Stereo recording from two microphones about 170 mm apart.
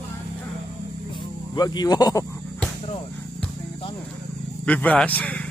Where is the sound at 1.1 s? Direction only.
25° left (ahead or behind).